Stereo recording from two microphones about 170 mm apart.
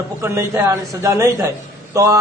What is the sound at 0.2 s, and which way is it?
A man's voice, 15° right (ahead or behind).